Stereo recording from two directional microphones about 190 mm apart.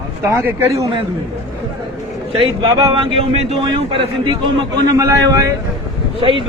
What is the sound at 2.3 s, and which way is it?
A man's voice, 25° right (ahead or behind).